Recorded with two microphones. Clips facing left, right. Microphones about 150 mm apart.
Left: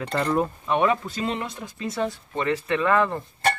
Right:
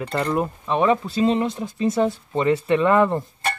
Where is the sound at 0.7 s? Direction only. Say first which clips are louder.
Right 4 dB; 25° right (ahead or behind).